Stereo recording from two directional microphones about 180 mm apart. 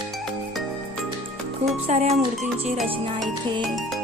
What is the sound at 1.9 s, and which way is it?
Speech, 40° right (ahead or behind).